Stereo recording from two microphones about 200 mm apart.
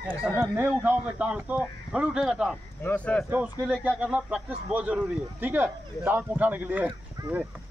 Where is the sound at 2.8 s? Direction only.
10° left (ahead or behind).